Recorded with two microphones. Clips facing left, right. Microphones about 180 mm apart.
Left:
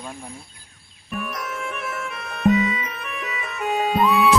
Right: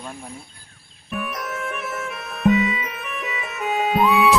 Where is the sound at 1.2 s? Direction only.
Centre (ahead or behind).